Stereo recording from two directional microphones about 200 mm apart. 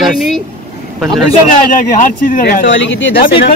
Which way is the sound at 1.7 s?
40° left (ahead or behind).